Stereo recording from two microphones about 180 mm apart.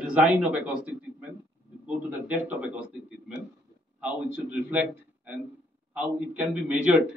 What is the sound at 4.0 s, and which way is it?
Speech, 5° right (ahead or behind).